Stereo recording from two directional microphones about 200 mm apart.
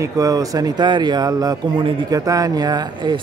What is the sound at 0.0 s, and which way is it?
Speech, 15° right (ahead or behind).